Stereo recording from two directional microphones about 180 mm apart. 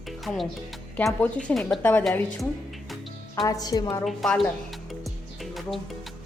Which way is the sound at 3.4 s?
20° left (ahead or behind).